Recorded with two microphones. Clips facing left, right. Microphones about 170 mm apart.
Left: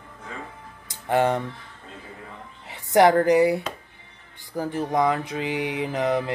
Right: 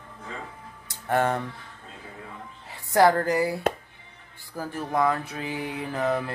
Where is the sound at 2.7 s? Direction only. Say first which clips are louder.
Left 3 dB; 20° left (ahead or behind).